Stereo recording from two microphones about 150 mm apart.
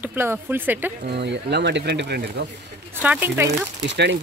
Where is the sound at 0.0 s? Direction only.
15° right (ahead or behind).